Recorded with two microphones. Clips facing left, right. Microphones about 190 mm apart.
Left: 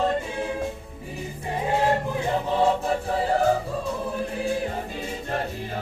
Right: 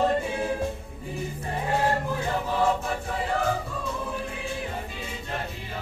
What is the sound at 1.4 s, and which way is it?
Choir, 20° left (ahead or behind).